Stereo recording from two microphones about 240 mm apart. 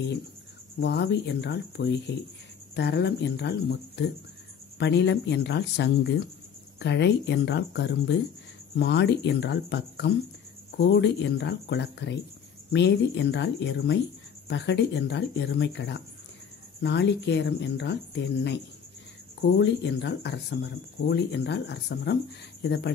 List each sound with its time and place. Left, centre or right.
0.7 s speech: left
19.6 s speech: left